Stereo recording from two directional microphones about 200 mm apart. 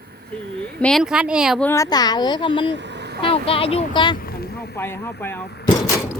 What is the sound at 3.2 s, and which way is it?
Speech, 25° left (ahead or behind).